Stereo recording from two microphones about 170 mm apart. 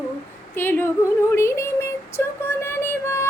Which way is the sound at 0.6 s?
15° left (ahead or behind).